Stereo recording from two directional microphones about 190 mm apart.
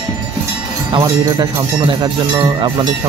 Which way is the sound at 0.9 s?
20° right (ahead or behind).